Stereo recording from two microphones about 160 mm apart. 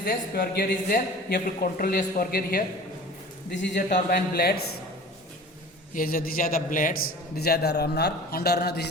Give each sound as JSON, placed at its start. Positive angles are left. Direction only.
{"t": 0.0, "sound": "a man's voice", "side_deg": 65}
{"t": 3.5, "sound": "speech", "side_deg": 50}
{"t": 4.1, "sound": "a man's voice", "side_deg": 75}
{"t": 5.9, "sound": "a man's voice", "side_deg": 60}
{"t": 7.3, "sound": "a man's voice", "side_deg": 80}